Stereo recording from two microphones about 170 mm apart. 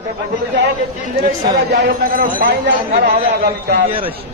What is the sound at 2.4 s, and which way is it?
Speech, 75° right (ahead or behind).